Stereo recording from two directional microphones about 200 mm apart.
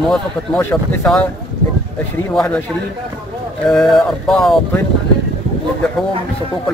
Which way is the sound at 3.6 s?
Centre (ahead or behind).